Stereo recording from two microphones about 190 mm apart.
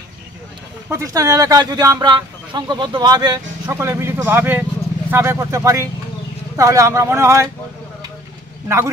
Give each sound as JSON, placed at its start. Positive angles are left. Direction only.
{"t": 0.8, "sound": "speech", "side_deg": -15}
{"t": 8.6, "sound": "speech", "side_deg": -10}